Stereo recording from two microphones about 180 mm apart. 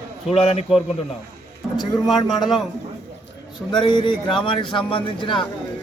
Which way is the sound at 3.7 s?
25° left (ahead or behind).